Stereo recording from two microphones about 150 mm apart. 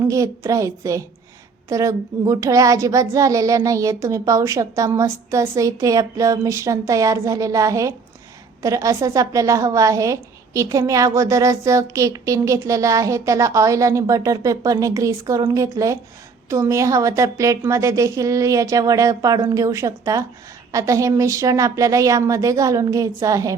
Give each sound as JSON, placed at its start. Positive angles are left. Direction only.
{"t": 0.0, "sound": "a woman's voice", "side_deg": -20}